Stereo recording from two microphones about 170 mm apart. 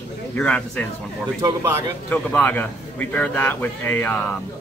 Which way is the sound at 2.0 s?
10° left (ahead or behind).